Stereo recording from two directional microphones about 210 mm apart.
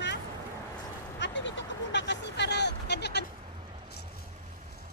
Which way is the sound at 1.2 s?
60° left (ahead or behind).